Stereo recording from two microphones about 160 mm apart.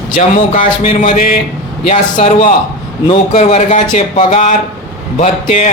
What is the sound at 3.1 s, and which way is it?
A man's voice, 45° left (ahead or behind).